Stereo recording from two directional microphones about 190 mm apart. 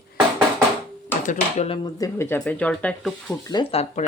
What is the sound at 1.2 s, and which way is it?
Speech, 35° left (ahead or behind).